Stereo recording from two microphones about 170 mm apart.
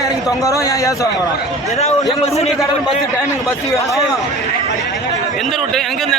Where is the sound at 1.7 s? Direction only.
40° left (ahead or behind).